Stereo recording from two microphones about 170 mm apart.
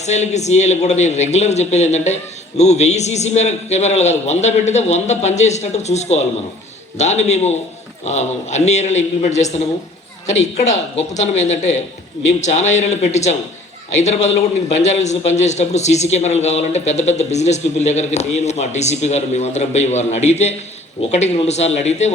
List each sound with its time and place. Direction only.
0.0 s a man's voice: 40° left (ahead or behind)